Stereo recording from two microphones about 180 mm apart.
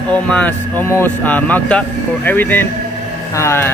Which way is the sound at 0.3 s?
10° left (ahead or behind).